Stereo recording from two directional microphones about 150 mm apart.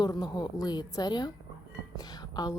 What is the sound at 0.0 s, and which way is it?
Speech, 25° left (ahead or behind).